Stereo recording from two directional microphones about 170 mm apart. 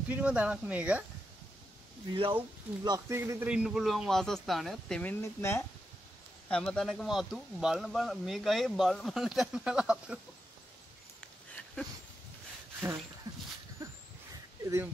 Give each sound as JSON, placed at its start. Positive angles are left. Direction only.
{"t": 0.1, "sound": "speech", "side_deg": -10}
{"t": 2.0, "sound": "speech", "side_deg": -30}
{"t": 2.8, "sound": "speech", "side_deg": -20}
{"t": 5.2, "sound": "speech", "side_deg": 15}
{"t": 6.5, "sound": "speech", "side_deg": 5}
{"t": 13.3, "sound": "dog", "side_deg": -20}
{"t": 13.8, "sound": "a sound", "side_deg": -20}
{"t": 14.6, "sound": "speech", "side_deg": -15}